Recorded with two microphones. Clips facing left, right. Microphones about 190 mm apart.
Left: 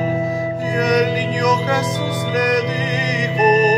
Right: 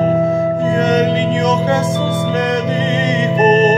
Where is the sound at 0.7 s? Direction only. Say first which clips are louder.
Even; 25° right (ahead or behind).